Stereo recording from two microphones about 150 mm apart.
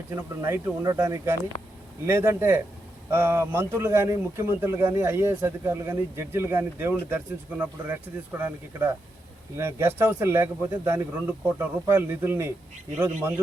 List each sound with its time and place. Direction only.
0.1 s a man's voice: 20° right (ahead or behind)